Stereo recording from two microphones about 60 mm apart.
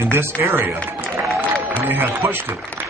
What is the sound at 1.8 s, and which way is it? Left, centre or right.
Speech, right.